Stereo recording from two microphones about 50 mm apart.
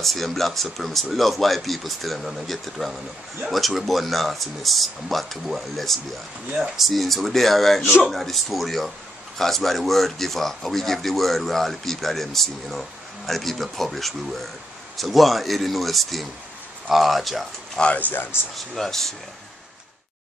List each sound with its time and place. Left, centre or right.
0.0 s speech: centre
6.5 s speech: centre
6.9 s speech: centre
17.9 s speech: left
18.8 s speech: centre